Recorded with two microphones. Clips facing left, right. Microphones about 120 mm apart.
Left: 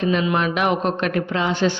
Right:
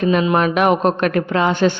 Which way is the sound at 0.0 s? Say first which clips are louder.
Right 4 dB; 50° right (ahead or behind).